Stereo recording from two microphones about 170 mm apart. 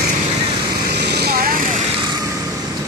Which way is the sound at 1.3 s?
55° right (ahead or behind).